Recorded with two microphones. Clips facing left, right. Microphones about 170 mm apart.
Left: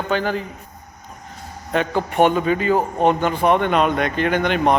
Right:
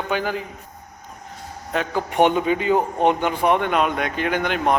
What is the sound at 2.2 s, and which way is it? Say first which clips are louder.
Speech: left 1 dB; 15° right (ahead or behind).